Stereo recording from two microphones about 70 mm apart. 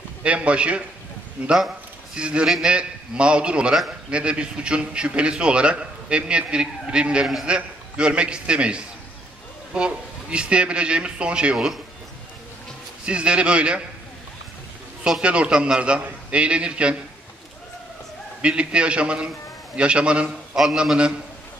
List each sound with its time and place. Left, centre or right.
0.2 s a man's voice: centre
13.0 s a man's voice: centre
15.0 s a man's voice: centre
18.4 s a man's voice: centre